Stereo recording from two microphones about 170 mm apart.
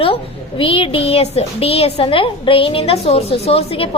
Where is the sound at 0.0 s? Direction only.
35° left (ahead or behind).